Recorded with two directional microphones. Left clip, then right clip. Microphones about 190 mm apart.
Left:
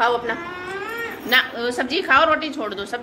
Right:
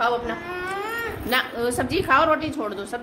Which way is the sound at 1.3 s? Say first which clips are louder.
Left 5 dB; 15° right (ahead or behind).